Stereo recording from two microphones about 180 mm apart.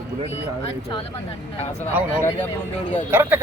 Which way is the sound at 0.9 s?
30° left (ahead or behind).